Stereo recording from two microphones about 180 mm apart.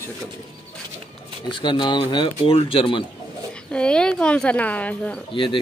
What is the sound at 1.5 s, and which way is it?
Speech, 25° left (ahead or behind).